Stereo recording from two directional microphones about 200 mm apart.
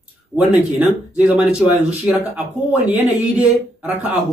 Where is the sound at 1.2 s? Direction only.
5° right (ahead or behind).